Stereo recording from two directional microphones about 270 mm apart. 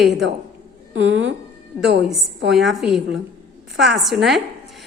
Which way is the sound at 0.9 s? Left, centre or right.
Right.